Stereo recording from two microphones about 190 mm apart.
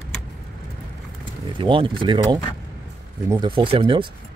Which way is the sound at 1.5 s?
25° right (ahead or behind).